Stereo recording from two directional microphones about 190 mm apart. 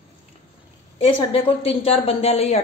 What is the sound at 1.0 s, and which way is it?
A woman's voice, 30° left (ahead or behind).